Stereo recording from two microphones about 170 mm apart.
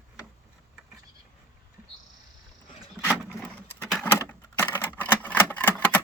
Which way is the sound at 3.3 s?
15° left (ahead or behind).